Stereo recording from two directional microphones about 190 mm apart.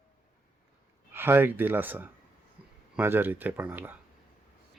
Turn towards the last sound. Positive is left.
turn(degrees=-10)  # may be behind; listen again after turning